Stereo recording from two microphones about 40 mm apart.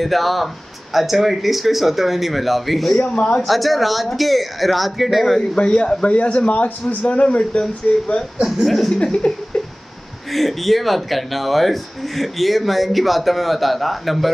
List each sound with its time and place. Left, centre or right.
0.0 s speech: centre
3.0 s a man's voice: left
3.4 s speech: centre
5.6 s a man's voice: left
8.5 s speech: centre
8.9 s a man's voice: left
10.3 s speech: centre